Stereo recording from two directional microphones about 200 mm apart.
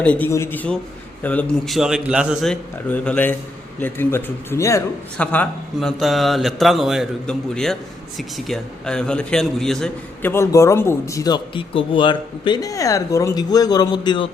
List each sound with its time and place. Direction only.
0.0 s a man's voice: 5° left (ahead or behind)